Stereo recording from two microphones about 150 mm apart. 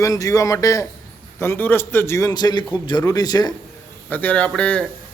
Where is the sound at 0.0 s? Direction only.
25° left (ahead or behind).